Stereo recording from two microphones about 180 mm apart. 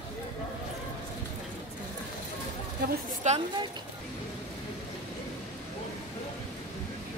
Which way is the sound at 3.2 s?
40° right (ahead or behind).